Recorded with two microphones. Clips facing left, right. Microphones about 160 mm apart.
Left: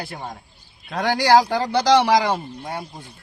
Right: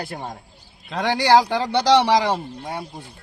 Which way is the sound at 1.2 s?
Centre (ahead or behind).